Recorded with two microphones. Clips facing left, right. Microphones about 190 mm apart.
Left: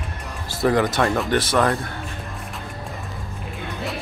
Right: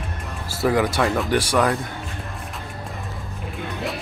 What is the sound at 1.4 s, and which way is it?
Speech, 10° right (ahead or behind).